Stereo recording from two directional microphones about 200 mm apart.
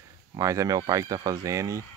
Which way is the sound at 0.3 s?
15° right (ahead or behind).